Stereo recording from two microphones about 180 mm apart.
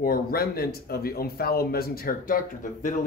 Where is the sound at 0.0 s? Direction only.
55° left (ahead or behind).